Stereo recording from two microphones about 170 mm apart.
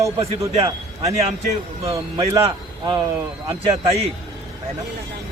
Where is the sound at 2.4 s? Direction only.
30° right (ahead or behind).